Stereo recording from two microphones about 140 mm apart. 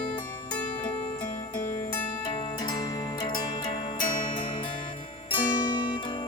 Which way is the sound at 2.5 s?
30° left (ahead or behind).